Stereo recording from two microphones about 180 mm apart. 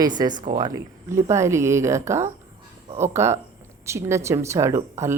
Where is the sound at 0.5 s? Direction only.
20° right (ahead or behind).